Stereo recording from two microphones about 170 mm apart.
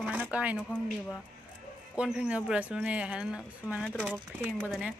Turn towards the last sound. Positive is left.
turn(degrees=-10)  # may be behind; listen again after turning